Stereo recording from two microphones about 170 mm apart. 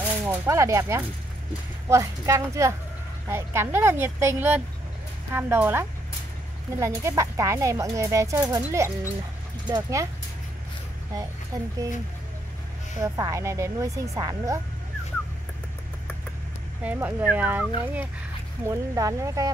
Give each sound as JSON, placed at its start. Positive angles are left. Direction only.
{"t": 0.0, "sound": "a woman's voice", "side_deg": -10}
{"t": 13.0, "sound": "a woman's voice", "side_deg": -20}
{"t": 16.8, "sound": "a woman's voice", "side_deg": -10}